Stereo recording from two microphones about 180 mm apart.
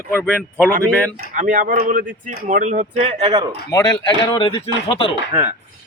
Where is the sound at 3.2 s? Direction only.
20° right (ahead or behind).